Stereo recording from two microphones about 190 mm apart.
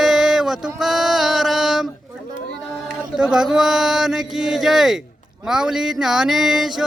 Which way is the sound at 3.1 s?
5° right (ahead or behind).